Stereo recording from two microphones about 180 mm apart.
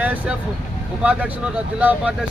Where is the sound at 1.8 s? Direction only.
10° right (ahead or behind).